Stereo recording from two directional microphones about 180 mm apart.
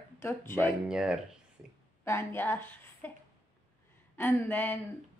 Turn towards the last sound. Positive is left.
turn(degrees=10)  # may be behind; listen again after turning